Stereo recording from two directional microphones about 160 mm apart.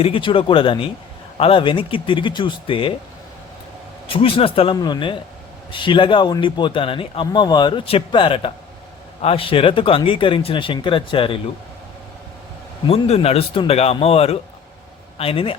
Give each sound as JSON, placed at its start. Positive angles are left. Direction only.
{"t": 0.0, "sound": "speech", "side_deg": 35}
{"t": 4.1, "sound": "speech", "side_deg": 35}
{"t": 12.9, "sound": "speech", "side_deg": 40}